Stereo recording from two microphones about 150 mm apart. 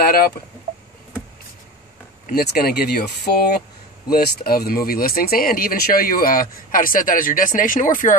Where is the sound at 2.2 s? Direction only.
80° left.